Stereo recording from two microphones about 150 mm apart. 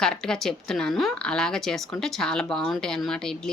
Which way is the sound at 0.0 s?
5° left (ahead or behind).